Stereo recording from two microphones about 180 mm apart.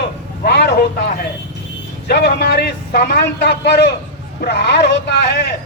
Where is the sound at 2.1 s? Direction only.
65° left (ahead or behind).